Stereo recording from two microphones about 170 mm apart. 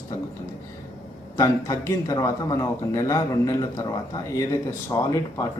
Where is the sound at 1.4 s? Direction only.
20° left (ahead or behind).